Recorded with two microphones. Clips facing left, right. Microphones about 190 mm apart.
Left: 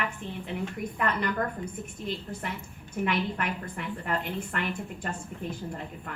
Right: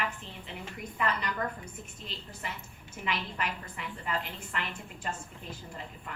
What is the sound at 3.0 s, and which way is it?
A woman's voice, 55° left (ahead or behind).